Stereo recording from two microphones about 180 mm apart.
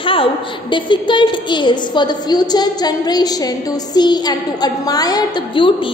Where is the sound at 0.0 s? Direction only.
30° left (ahead or behind).